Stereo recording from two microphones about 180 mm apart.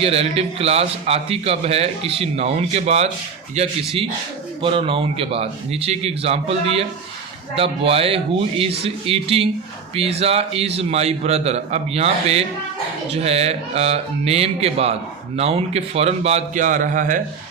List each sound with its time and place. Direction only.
0.0 s a man's voice: 35° right (ahead or behind)